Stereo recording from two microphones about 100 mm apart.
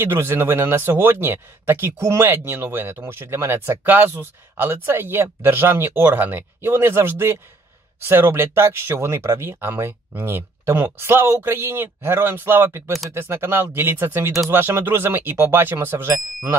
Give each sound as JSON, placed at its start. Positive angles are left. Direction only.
{"t": 0.0, "sound": "speech", "side_deg": -25}